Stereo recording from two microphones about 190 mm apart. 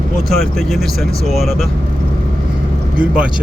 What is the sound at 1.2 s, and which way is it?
Speech, centre (ahead or behind).